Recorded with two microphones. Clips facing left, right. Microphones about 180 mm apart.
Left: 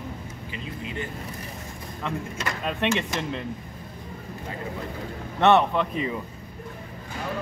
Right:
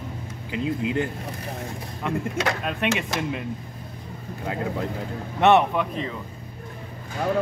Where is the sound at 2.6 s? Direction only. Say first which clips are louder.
Even; 5° right (ahead or behind).